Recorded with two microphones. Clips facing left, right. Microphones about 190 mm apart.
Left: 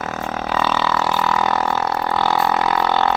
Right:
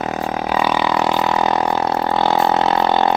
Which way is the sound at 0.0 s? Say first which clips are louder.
Right 4 dB; 15° right (ahead or behind).